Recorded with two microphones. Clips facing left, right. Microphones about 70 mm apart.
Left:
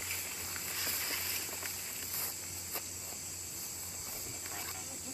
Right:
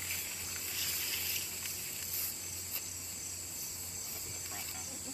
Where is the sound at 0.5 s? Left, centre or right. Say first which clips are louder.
Left 4 dB; left.